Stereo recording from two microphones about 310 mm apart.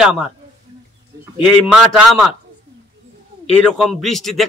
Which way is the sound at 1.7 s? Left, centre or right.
Centre.